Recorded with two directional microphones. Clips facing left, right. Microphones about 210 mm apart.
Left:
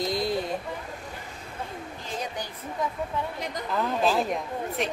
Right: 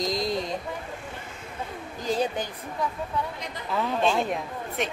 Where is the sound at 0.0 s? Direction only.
5° left (ahead or behind).